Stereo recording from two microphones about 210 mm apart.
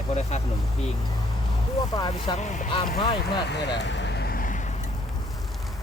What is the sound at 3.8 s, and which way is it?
Vehicle, 60° left (ahead or behind).